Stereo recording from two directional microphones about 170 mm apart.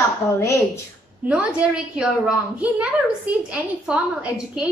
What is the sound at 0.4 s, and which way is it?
Speech, 15° left (ahead or behind).